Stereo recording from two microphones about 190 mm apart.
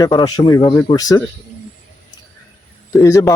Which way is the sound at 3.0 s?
15° left (ahead or behind).